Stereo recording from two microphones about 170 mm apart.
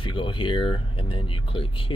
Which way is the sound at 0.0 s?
30° left (ahead or behind).